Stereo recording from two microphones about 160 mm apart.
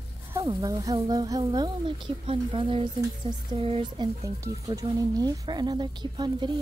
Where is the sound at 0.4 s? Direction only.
25° right (ahead or behind).